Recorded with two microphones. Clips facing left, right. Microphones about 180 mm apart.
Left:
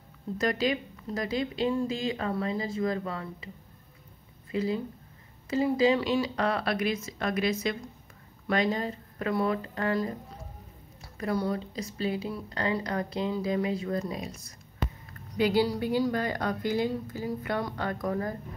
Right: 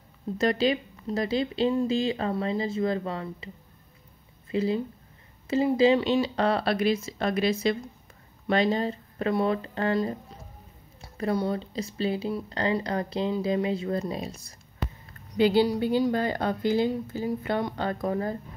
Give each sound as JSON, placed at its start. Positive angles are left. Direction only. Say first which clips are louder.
{"t": 0.4, "sound": "speech", "louder": "right 4 dB", "side_deg": -25}
{"t": 4.5, "sound": "speech", "louder": "right 3 dB", "side_deg": -25}